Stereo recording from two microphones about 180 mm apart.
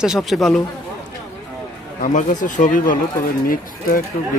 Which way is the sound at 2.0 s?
45° left (ahead or behind).